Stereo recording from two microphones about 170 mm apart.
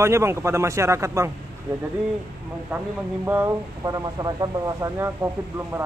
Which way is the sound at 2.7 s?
10° right (ahead or behind).